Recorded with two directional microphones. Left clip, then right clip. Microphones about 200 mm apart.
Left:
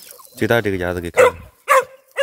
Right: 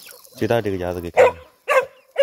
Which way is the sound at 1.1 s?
50° left (ahead or behind).